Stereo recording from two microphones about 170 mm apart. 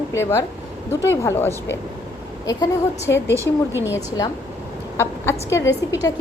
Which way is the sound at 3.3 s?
15° right (ahead or behind).